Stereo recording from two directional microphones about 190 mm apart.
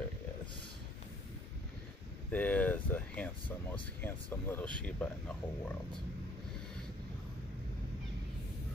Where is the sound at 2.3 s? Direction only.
10° left (ahead or behind).